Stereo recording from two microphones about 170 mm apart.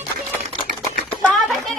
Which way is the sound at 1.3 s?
Centre (ahead or behind).